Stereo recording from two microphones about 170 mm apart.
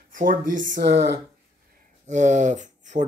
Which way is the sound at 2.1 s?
45° right (ahead or behind).